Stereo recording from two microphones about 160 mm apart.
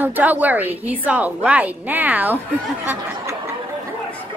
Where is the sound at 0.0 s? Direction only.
10° right (ahead or behind).